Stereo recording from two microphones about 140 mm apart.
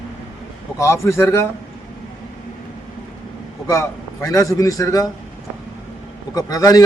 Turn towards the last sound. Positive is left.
turn(degrees=25)  # may be behind; listen again after turning